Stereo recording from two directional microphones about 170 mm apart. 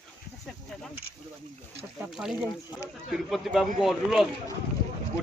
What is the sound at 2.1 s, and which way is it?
A man's voice, 5° right (ahead or behind).